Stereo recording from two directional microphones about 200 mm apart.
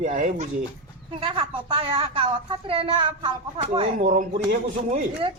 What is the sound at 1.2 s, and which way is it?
A woman's voice, 25° right (ahead or behind).